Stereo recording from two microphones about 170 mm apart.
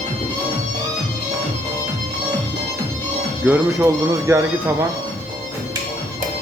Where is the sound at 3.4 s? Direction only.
15° right (ahead or behind).